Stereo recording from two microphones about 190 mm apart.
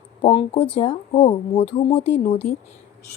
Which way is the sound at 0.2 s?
30° left (ahead or behind).